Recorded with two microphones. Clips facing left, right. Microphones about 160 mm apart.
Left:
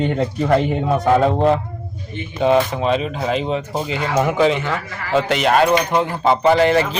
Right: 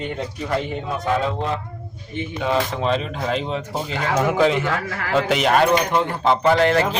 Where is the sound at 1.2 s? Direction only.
55° left (ahead or behind).